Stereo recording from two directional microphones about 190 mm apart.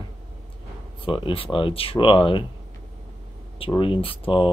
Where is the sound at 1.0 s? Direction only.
25° left (ahead or behind).